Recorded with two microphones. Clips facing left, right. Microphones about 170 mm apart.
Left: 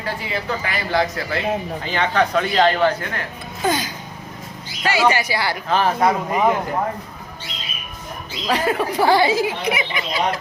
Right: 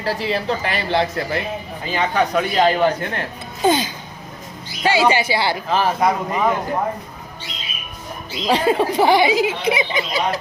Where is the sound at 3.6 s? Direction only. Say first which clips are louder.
Right 4 dB; 25° right (ahead or behind).